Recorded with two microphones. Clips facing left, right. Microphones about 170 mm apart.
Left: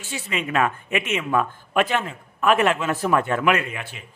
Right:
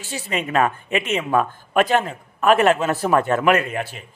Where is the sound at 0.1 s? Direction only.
40° right (ahead or behind).